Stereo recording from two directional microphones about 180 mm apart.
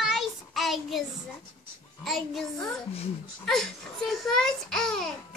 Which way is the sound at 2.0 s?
Centre (ahead or behind).